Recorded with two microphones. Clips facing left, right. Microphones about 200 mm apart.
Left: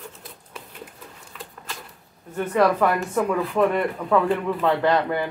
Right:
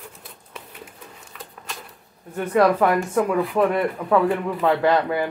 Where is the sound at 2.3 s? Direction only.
10° right (ahead or behind).